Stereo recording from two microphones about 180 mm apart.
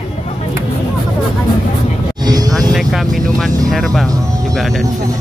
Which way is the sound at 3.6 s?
Centre (ahead or behind).